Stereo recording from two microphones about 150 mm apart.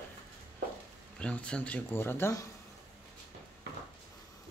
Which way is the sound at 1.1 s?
5° left (ahead or behind).